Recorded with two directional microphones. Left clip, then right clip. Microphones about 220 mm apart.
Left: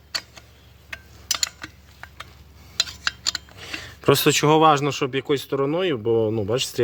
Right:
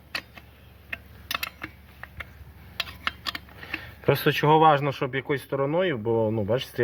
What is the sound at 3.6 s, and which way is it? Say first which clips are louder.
Speech: left 2 dB; 55° left (ahead or behind).